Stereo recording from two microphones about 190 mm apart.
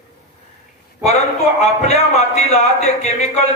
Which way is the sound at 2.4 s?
35° left (ahead or behind).